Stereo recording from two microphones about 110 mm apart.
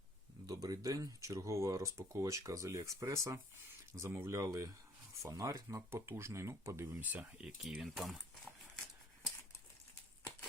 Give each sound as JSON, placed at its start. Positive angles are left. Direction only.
{"t": 0.4, "sound": "speech", "side_deg": -35}
{"t": 7.6, "sound": "speech", "side_deg": -5}